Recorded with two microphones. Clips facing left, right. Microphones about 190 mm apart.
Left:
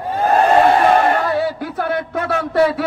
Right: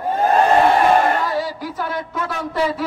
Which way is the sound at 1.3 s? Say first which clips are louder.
Left 4 dB; 60° left (ahead or behind).